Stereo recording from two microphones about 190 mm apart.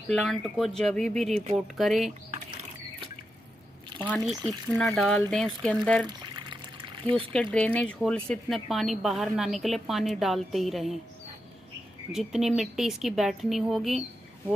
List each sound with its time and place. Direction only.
0.1 s a woman's voice: centre (ahead or behind)
4.0 s a woman's voice: 10° left (ahead or behind)
6.0 s pour: 25° right (ahead or behind)
7.5 s a woman's voice: 5° left (ahead or behind)
12.1 s a woman's voice: centre (ahead or behind)